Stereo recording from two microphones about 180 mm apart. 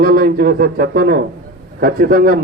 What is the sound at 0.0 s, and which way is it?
A man's voice, 55° right (ahead or behind).